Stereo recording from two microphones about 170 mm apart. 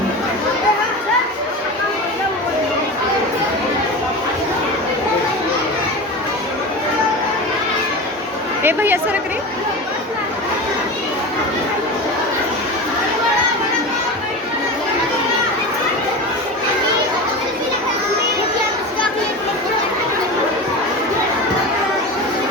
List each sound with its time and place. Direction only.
8.6 s chatter: 10° right (ahead or behind)